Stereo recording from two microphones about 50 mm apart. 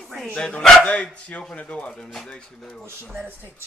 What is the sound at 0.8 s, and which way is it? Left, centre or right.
A woman's voice, left.